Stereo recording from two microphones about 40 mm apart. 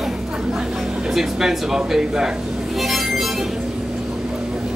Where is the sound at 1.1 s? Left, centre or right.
Centre.